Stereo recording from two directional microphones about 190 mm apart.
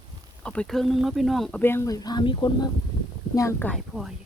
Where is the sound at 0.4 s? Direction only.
5° left (ahead or behind); by 2.5 s 25° left (ahead or behind).